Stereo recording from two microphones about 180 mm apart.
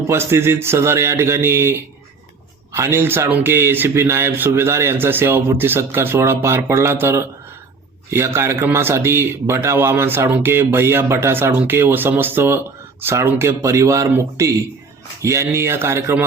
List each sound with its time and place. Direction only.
0.1 s speech: 15° right (ahead or behind)